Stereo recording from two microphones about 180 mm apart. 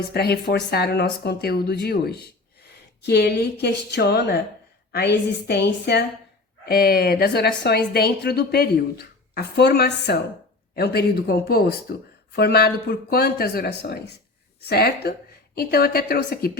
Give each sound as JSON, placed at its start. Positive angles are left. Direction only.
{"t": 0.1, "sound": "a woman's voice", "side_deg": 60}